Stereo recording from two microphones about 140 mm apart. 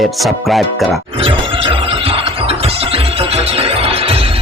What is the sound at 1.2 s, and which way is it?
Music, 40° right (ahead or behind).